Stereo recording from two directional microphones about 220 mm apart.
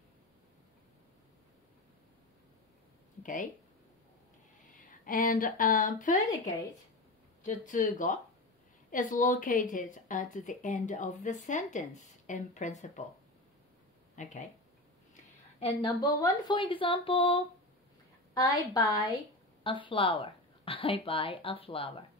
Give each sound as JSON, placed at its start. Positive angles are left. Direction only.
{"t": 3.2, "sound": "speech", "side_deg": 35}
{"t": 4.7, "sound": "speech", "side_deg": 40}
{"t": 6.3, "sound": "speech", "side_deg": 15}
{"t": 7.4, "sound": "a woman's voice", "side_deg": 35}
{"t": 14.1, "sound": "a woman's voice", "side_deg": 35}
{"t": 15.6, "sound": "speech", "side_deg": 20}
{"t": 18.7, "sound": "speech", "side_deg": 20}